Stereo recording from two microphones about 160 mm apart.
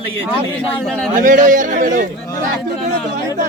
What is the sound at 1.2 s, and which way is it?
Speech, 55° right (ahead or behind).